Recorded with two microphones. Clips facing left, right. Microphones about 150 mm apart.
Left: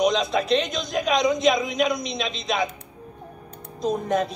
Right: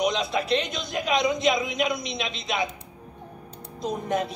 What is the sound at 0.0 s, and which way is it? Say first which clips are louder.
A man's voice: left 4 dB; 20° left (ahead or behind).